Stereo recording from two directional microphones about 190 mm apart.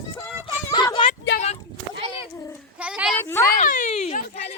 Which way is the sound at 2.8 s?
5° right (ahead or behind).